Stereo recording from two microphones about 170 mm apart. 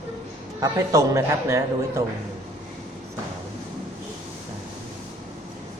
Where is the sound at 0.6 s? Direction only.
20° right (ahead or behind).